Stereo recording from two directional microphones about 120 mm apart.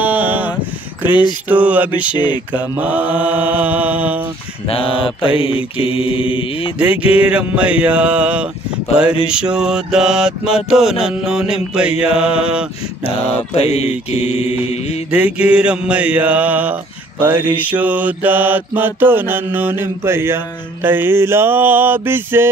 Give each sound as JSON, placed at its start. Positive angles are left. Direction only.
{"t": 0.0, "sound": "a sound", "side_deg": -15}
{"t": 1.0, "sound": "a sound", "side_deg": 40}
{"t": 1.5, "sound": "mantra", "side_deg": -15}
{"t": 2.1, "sound": "a sound", "side_deg": 40}
{"t": 2.5, "sound": "mantra", "side_deg": -10}
{"t": 4.6, "sound": "mantra", "side_deg": 50}
{"t": 6.8, "sound": "mantra", "side_deg": -10}
{"t": 13.0, "sound": "mantra", "side_deg": 55}
{"t": 15.0, "sound": "mantra", "side_deg": -10}